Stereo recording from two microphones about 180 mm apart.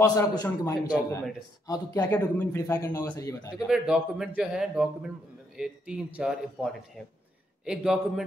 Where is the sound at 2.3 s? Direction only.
15° left (ahead or behind).